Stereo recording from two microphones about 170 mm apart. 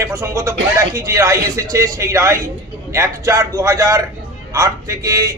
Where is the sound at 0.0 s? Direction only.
20° right (ahead or behind).